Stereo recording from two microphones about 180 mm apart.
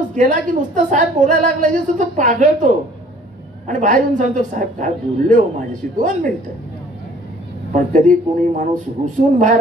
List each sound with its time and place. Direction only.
0.1 s a woman's voice: 45° right (ahead or behind)
7.7 s a woman's voice: 45° right (ahead or behind)